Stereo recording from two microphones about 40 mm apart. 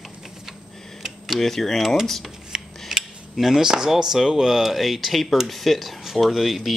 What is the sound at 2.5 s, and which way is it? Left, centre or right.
Filing, centre.